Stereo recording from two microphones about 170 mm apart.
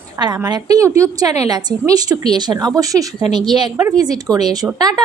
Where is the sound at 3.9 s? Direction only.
20° right (ahead or behind).